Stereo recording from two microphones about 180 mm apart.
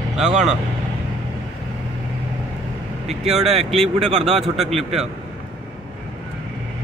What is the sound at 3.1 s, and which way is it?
Speech, 35° right (ahead or behind).